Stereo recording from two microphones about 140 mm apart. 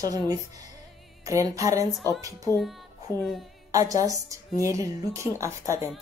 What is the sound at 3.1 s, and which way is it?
Speech, 20° left (ahead or behind).